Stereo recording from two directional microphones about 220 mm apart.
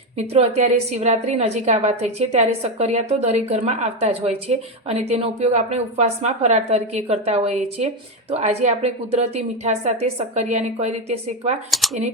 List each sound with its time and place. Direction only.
0.3 s a woman's voice: 30° right (ahead or behind)
11.7 s speech: centre (ahead or behind)